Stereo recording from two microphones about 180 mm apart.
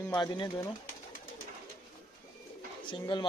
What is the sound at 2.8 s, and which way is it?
Speech, 25° left (ahead or behind).